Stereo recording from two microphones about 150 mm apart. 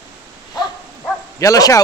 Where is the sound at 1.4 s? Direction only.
25° left (ahead or behind).